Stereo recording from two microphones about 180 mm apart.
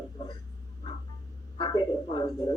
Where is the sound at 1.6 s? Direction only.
25° left (ahead or behind).